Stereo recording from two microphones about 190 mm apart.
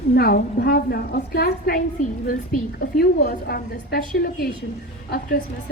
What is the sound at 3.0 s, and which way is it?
A woman's voice, 55° left (ahead or behind).